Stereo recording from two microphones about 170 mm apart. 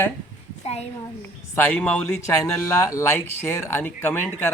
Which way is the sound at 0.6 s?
40° left (ahead or behind).